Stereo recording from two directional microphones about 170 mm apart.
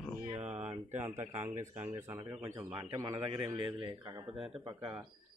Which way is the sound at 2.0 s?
15° right (ahead or behind).